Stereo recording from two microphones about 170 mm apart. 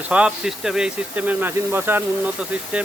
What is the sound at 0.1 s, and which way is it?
Speech, 5° right (ahead or behind).